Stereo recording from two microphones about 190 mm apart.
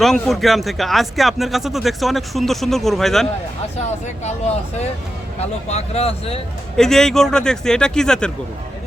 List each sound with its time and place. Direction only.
0.0 s speech: centre (ahead or behind)
5.4 s speech: 35° left (ahead or behind)
6.7 s speech: 5° left (ahead or behind)